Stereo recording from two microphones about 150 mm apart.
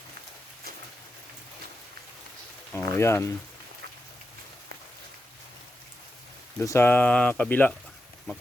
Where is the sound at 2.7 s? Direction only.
15° left (ahead or behind).